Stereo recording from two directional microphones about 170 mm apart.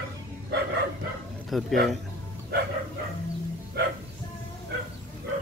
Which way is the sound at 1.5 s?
Centre (ahead or behind).